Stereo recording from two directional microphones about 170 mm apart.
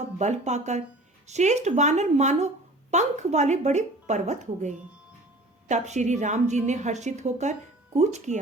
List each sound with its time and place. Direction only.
0.2 s a woman's voice: 40° right (ahead or behind)